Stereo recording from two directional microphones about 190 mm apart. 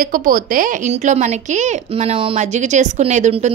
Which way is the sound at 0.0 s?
45° right (ahead or behind).